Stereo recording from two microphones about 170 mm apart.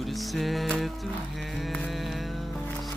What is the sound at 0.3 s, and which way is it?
Music, centre (ahead or behind).